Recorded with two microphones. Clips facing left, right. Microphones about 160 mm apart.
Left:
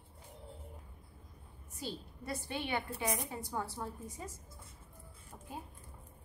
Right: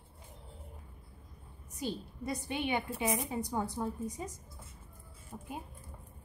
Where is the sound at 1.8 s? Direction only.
15° right (ahead or behind).